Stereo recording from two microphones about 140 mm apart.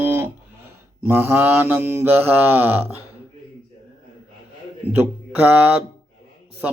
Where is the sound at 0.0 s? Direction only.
15° right (ahead or behind).